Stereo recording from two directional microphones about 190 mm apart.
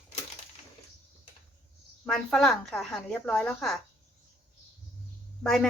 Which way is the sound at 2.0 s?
5° left (ahead or behind).